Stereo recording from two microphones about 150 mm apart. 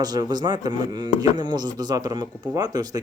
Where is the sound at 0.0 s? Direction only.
25° right (ahead or behind).